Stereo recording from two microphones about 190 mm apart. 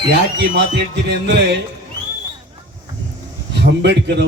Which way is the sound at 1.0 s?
65° right (ahead or behind).